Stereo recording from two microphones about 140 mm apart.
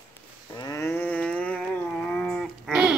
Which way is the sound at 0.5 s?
20° left (ahead or behind).